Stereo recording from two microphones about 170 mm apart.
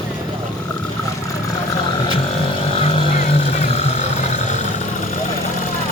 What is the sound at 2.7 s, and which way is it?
Vehicle, 35° left (ahead or behind).